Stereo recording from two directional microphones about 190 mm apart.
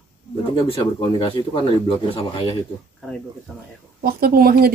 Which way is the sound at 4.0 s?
55° right (ahead or behind).